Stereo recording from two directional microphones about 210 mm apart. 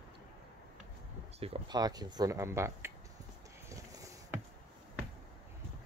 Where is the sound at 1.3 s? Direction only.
25° right (ahead or behind).